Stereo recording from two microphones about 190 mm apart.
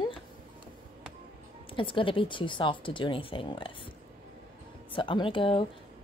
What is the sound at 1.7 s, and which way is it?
Speech, 25° left (ahead or behind).